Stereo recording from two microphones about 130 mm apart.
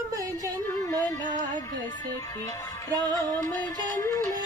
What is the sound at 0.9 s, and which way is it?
Music, 30° left (ahead or behind).